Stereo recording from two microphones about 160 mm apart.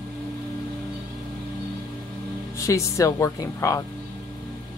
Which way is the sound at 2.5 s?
20° left (ahead or behind).